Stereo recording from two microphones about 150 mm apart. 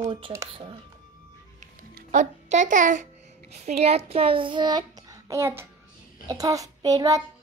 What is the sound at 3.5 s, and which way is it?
A child's voice, 45° right (ahead or behind).